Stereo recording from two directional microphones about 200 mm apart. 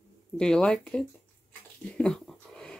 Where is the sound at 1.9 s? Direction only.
5° left (ahead or behind).